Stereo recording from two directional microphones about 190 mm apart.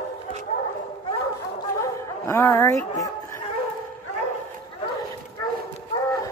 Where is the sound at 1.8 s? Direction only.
15° left (ahead or behind).